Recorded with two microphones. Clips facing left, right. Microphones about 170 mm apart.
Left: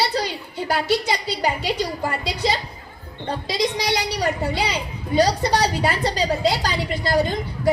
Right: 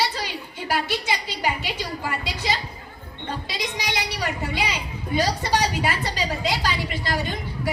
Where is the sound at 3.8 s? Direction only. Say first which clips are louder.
Left 5 dB; 35° left (ahead or behind).